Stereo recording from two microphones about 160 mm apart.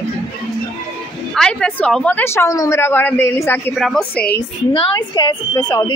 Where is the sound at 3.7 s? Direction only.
Centre (ahead or behind).